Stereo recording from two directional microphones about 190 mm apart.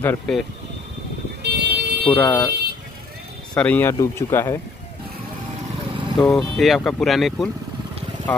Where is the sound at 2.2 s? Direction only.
20° left (ahead or behind).